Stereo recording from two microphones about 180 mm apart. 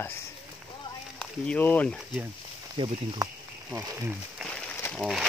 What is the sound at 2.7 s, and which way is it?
Speech, 30° right (ahead or behind).